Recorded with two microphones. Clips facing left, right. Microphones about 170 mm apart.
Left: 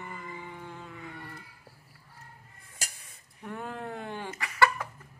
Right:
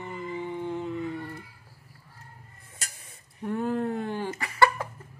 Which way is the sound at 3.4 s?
35° right (ahead or behind).